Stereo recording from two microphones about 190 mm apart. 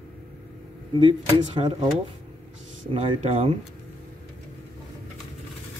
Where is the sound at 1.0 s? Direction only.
30° right (ahead or behind).